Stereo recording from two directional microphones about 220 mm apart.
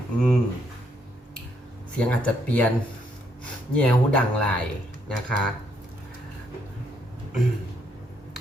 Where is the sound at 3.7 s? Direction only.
5° left (ahead or behind).